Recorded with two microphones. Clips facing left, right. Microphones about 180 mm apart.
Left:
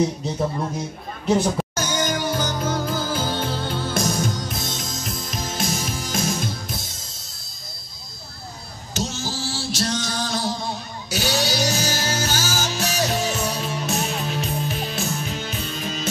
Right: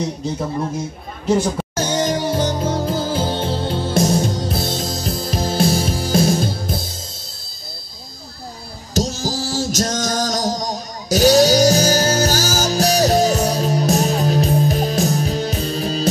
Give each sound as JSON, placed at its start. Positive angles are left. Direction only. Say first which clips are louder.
{"t": 1.8, "sound": "music", "louder": "right 5 dB", "side_deg": -30}
{"t": 8.9, "sound": "music", "louder": "right 7 dB", "side_deg": -40}